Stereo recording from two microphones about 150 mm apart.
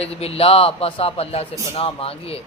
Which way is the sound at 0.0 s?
40° left (ahead or behind).